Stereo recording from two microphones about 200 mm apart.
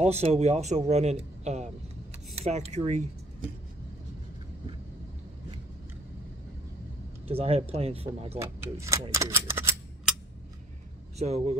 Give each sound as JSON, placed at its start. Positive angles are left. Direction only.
{"t": 0.0, "sound": "a man's voice", "side_deg": -35}
{"t": 7.2, "sound": "speech", "side_deg": -30}
{"t": 8.4, "sound": "speech", "side_deg": -15}
{"t": 11.1, "sound": "a man's voice", "side_deg": -35}